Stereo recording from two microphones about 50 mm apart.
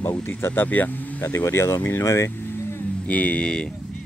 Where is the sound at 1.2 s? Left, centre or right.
Left.